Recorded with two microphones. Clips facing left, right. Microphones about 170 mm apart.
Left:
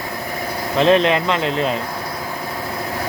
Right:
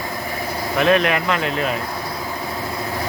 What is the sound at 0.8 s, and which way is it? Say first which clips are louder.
Speech: left 3 dB; 25° left (ahead or behind).